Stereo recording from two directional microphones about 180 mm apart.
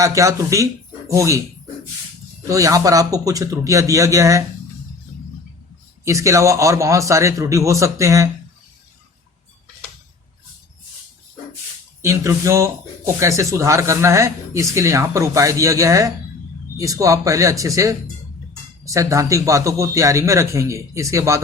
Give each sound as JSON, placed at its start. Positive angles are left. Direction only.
{"t": 0.0, "sound": "speech", "side_deg": -15}
{"t": 2.5, "sound": "speech", "side_deg": -15}
{"t": 6.1, "sound": "speech", "side_deg": -15}
{"t": 12.0, "sound": "speech", "side_deg": -15}